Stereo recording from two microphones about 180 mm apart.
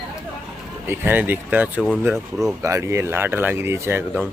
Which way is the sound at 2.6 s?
15° right (ahead or behind).